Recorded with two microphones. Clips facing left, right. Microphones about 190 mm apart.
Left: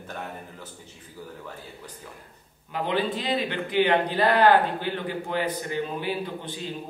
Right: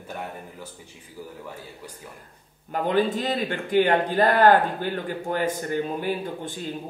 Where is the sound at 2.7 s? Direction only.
45° right (ahead or behind).